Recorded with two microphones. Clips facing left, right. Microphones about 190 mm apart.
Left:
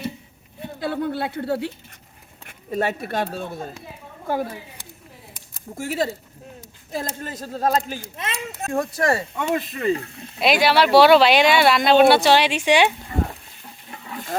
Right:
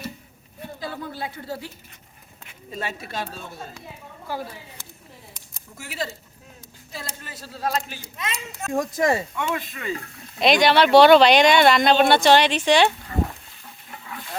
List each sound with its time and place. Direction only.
0.8 s speech: 65° left (ahead or behind)
5.7 s speech: 50° left (ahead or behind)
9.0 s speech: 20° right (ahead or behind)
9.3 s speech: 35° left (ahead or behind)
10.4 s speech: 5° left (ahead or behind)